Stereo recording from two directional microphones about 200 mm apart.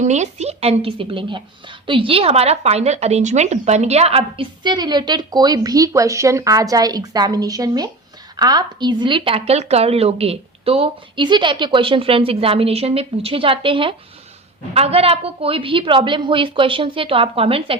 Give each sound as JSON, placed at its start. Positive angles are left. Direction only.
{"t": 0.0, "sound": "speech", "side_deg": -35}